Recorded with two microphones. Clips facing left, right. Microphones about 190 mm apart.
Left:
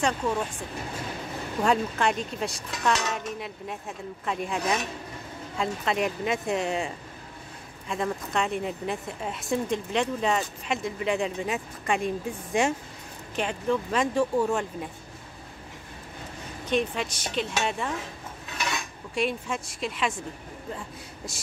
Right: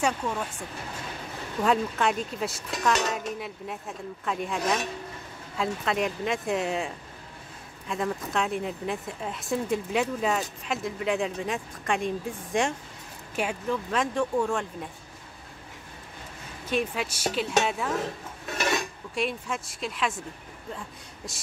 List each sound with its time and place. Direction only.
1.6 s speech: centre (ahead or behind)
7.9 s speech: centre (ahead or behind)
16.6 s speech: 5° right (ahead or behind)
18.5 s dishes: 45° right (ahead or behind)
19.1 s speech: centre (ahead or behind)